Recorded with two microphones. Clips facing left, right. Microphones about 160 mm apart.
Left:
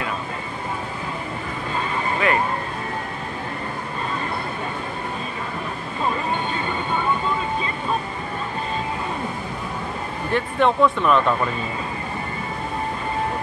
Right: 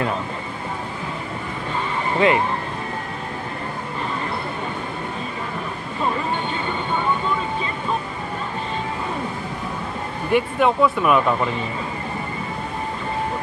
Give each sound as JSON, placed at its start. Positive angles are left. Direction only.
{"t": 2.1, "sound": "speech", "side_deg": -25}
{"t": 10.3, "sound": "speech", "side_deg": -5}